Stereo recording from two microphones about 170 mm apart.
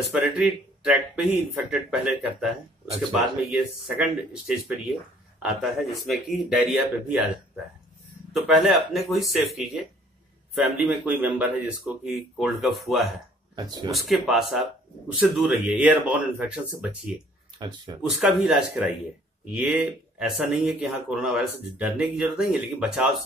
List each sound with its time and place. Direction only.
0.2 s speech: 5° right (ahead or behind)
3.5 s speech: 5° right (ahead or behind)
8.3 s speech: centre (ahead or behind)
13.6 s speech: 20° right (ahead or behind)
13.9 s speech: centre (ahead or behind)
17.6 s speech: 25° right (ahead or behind)
18.1 s speech: centre (ahead or behind)